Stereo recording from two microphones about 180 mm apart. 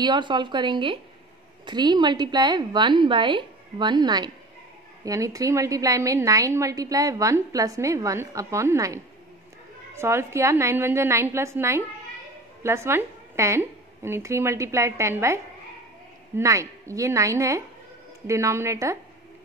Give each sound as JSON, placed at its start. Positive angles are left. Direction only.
{"t": 0.0, "sound": "a woman's voice", "side_deg": -25}